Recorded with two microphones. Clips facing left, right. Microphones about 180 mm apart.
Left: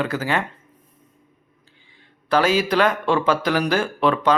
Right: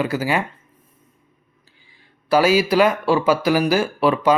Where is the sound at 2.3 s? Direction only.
10° right (ahead or behind).